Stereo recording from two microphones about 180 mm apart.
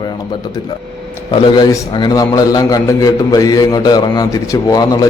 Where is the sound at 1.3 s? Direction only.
25° left (ahead or behind).